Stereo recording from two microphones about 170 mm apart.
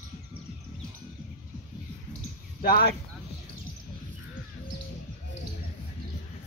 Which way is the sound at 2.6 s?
60° left (ahead or behind).